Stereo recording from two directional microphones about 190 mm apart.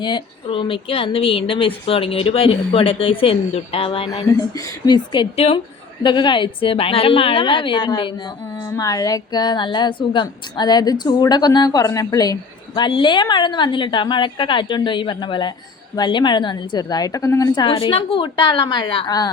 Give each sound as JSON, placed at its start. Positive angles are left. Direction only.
{"t": 0.0, "sound": "a woman's voice", "side_deg": 25}